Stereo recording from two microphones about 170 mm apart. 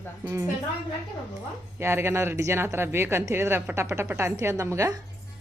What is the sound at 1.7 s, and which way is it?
Speech, 15° right (ahead or behind).